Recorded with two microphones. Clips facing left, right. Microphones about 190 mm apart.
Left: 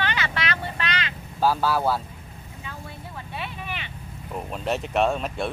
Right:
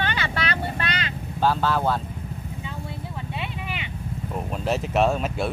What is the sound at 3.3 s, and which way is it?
Vehicle, 15° right (ahead or behind).